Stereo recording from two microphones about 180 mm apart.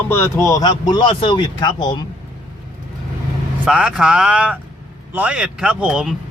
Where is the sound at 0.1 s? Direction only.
15° left (ahead or behind).